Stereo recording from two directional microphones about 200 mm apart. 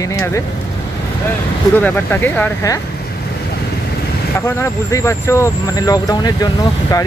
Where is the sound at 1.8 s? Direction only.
10° left (ahead or behind).